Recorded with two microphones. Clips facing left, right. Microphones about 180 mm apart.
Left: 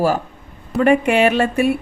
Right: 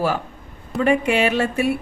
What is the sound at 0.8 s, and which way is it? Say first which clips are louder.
Speech: left 4 dB; 55° left (ahead or behind).